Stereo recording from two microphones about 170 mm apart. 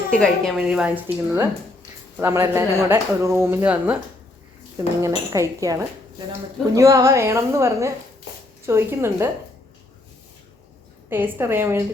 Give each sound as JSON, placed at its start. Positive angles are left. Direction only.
{"t": 0.2, "sound": "a woman's voice", "side_deg": 0}
{"t": 5.0, "sound": "speech", "side_deg": -20}
{"t": 11.1, "sound": "speech", "side_deg": -10}